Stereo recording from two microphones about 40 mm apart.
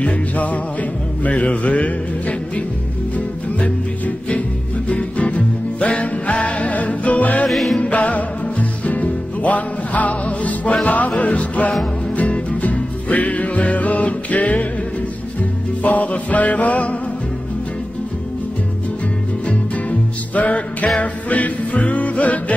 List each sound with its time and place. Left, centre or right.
0.0 s music: left
4.8 s music: left
7.4 s music: centre
7.8 s music: left
15.8 s music: left
19.4 s music: left